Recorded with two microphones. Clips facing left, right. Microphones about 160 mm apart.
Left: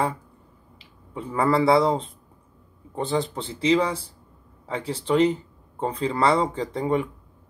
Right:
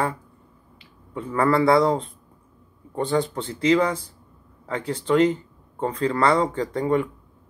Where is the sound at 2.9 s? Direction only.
5° left (ahead or behind).